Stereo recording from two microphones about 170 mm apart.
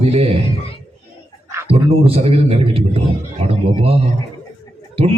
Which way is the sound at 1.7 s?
35° right (ahead or behind).